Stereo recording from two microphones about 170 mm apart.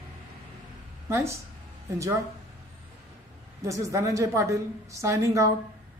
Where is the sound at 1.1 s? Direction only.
15° right (ahead or behind).